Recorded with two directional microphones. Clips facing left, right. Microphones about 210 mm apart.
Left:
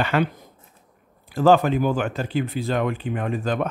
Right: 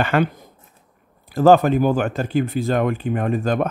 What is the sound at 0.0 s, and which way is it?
Speech, 50° right (ahead or behind).